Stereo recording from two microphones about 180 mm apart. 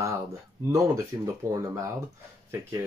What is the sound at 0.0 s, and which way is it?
Speech, 15° right (ahead or behind).